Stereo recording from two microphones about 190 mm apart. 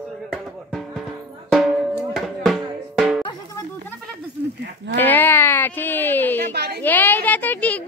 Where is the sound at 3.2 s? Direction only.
25° left (ahead or behind).